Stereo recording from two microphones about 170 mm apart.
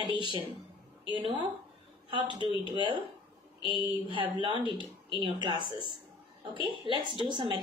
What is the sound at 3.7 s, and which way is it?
A woman's voice, 30° right (ahead or behind).